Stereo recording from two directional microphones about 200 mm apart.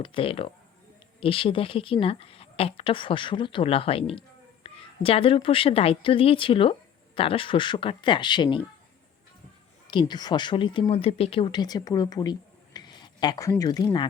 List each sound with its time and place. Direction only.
0.0 s a woman's voice: 25° left (ahead or behind)
9.8 s speech: 25° left (ahead or behind)